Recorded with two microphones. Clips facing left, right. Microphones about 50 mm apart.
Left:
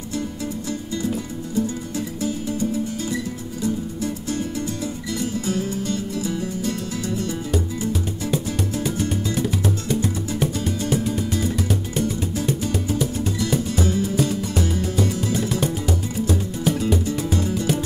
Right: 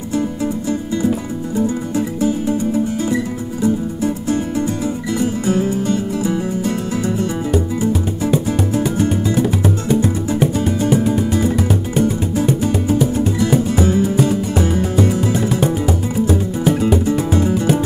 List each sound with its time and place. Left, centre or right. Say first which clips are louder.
1.0 s music: right 7 dB; right